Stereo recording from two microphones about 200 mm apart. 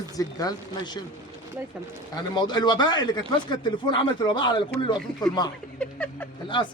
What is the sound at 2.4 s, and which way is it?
Speech, 20° left (ahead or behind).